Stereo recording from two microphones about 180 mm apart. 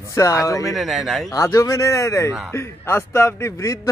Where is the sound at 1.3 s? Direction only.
15° left (ahead or behind).